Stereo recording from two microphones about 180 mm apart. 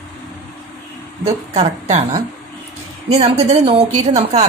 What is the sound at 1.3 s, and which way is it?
A woman's voice, 35° right (ahead or behind).